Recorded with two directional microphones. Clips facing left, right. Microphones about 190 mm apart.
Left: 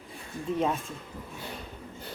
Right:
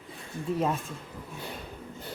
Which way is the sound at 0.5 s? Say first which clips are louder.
Even; centre (ahead or behind).